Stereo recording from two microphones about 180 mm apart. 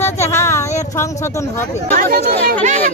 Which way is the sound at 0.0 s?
15° left (ahead or behind).